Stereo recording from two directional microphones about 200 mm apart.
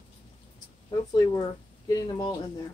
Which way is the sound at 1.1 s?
20° left (ahead or behind).